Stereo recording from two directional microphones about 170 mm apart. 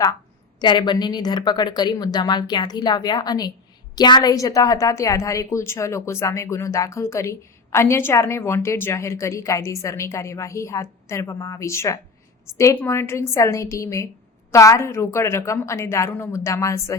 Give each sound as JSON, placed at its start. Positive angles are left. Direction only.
{"t": 0.6, "sound": "a woman's voice", "side_deg": 25}